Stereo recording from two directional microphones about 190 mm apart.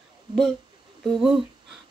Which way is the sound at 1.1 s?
5° right (ahead or behind).